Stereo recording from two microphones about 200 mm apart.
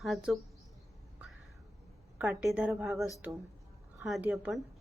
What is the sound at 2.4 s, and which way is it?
Speech, 5° right (ahead or behind).